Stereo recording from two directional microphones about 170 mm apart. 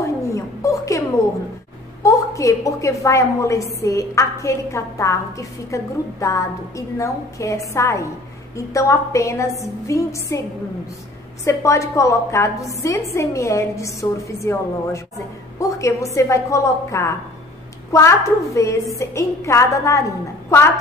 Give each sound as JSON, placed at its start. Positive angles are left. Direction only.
{"t": 0.0, "sound": "a sound", "side_deg": 20}
{"t": 2.0, "sound": "a woman's voice", "side_deg": 20}
{"t": 11.4, "sound": "a woman's voice", "side_deg": 15}